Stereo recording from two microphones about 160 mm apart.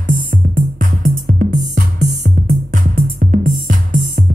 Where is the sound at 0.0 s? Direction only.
55° right (ahead or behind).